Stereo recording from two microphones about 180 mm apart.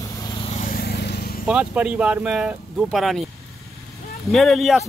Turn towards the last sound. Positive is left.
turn(degrees=0)  # may be behind; listen again after turning